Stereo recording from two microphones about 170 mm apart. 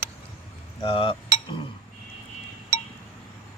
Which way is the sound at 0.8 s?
30° left (ahead or behind).